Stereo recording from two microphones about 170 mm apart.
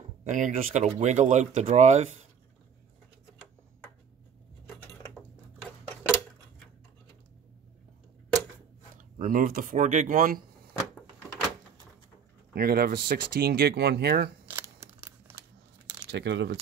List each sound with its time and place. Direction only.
0.2 s speech: 45° right (ahead or behind)
4.6 s a sound: centre (ahead or behind)
9.2 s speech: 55° right (ahead or behind)
12.5 s speech: 65° right (ahead or behind)
14.5 s scissors: 15° right (ahead or behind)
16.1 s speech: 90° right